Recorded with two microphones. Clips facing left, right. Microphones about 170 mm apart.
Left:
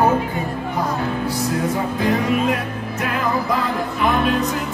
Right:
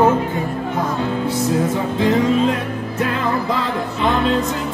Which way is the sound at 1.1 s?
25° right (ahead or behind).